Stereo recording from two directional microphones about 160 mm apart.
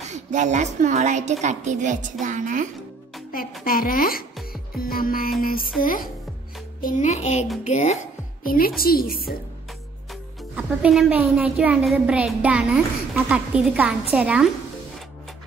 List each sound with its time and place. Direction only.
0.1 s a woman's voice: 50° right (ahead or behind)
3.6 s a woman's voice: 65° left (ahead or behind); by 8.0 s 45° left (ahead or behind)
8.5 s a woman's voice: 65° left (ahead or behind)
10.5 s a woman's voice: 5° right (ahead or behind)